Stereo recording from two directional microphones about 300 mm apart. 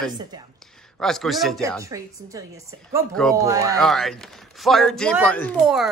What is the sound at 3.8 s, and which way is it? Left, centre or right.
Speech, centre.